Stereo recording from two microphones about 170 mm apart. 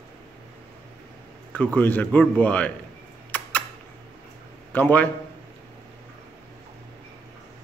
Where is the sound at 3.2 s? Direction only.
10° left (ahead or behind).